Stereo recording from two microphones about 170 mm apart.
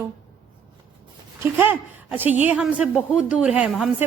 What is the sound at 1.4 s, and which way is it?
A woman's voice, 10° right (ahead or behind).